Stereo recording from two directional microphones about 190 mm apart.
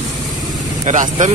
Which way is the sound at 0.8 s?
40° right (ahead or behind).